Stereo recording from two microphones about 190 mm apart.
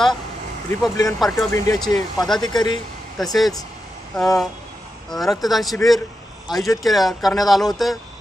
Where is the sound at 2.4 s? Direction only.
20° left (ahead or behind).